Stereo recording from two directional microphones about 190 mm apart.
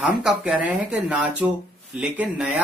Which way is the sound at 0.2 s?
5° right (ahead or behind).